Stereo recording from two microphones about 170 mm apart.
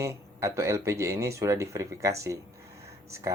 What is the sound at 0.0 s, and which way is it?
Speech, 15° right (ahead or behind).